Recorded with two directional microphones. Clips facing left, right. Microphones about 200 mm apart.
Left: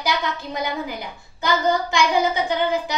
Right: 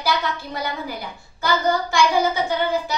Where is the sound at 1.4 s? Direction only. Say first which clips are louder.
Even; 20° left (ahead or behind).